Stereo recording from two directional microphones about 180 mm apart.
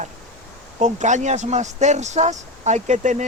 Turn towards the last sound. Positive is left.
turn(degrees=-40)  # may be behind; listen again after turning